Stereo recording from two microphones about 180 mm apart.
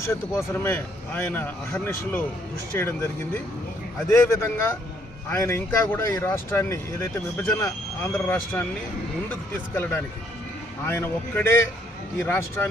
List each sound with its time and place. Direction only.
0.0 s speech: 15° left (ahead or behind)
4.1 s speech: 15° left (ahead or behind)